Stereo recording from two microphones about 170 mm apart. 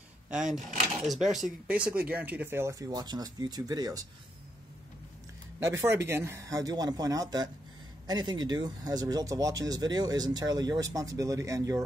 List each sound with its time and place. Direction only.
0.5 s speech: 45° right (ahead or behind)
1.0 s speech: centre (ahead or behind); by 4.0 s 20° right (ahead or behind)
5.7 s speech: 15° right (ahead or behind)